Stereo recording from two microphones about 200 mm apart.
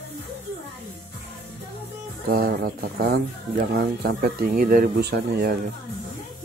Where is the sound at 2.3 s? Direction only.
50° right (ahead or behind).